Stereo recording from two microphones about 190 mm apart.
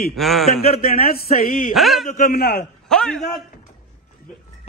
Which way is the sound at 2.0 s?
45° left (ahead or behind).